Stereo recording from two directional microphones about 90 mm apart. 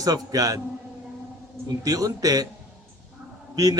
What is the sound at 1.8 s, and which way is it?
Speech, 45° right (ahead or behind).